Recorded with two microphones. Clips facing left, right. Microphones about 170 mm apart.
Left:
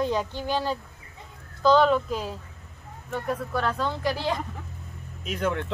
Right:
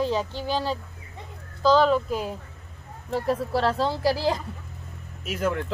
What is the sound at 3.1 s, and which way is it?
Speech, 30° right (ahead or behind).